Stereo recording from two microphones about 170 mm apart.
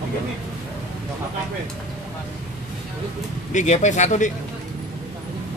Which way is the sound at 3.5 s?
45° left (ahead or behind).